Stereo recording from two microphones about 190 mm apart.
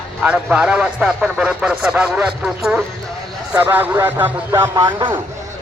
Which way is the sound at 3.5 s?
10° right (ahead or behind).